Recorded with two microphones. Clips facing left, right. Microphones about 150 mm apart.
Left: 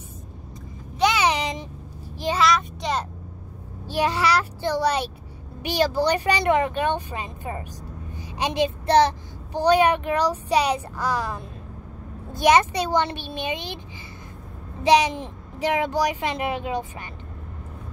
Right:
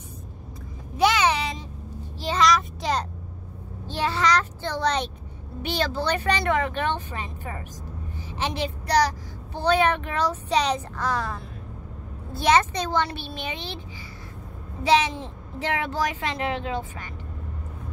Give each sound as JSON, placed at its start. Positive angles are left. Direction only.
{"t": 1.1, "sound": "a sound", "side_deg": 15}
{"t": 2.3, "sound": "child singing", "side_deg": 0}
{"t": 3.8, "sound": "child singing", "side_deg": 10}
{"t": 5.6, "sound": "speech", "side_deg": 15}
{"t": 8.3, "sound": "child singing", "side_deg": 15}
{"t": 9.6, "sound": "speech", "side_deg": 15}
{"t": 14.8, "sound": "speech", "side_deg": 15}